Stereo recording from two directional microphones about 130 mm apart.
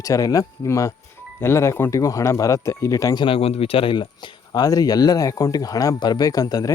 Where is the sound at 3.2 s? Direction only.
50° left (ahead or behind).